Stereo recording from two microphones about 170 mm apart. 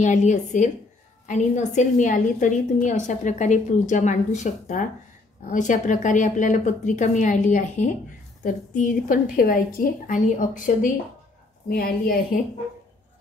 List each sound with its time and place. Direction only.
0.0 s a woman's voice: 45° left (ahead or behind)